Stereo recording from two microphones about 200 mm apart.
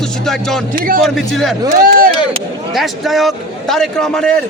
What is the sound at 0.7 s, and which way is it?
Speech, 45° right (ahead or behind).